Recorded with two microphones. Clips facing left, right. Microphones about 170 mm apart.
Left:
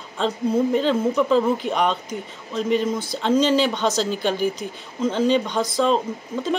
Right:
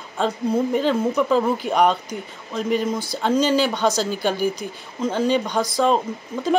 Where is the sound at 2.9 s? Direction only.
35° right (ahead or behind).